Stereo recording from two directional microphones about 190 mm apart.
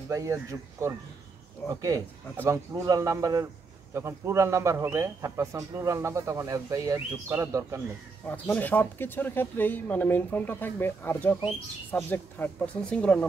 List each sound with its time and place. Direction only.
0.1 s a man's voice: 15° right (ahead or behind)
8.3 s speech: 10° left (ahead or behind)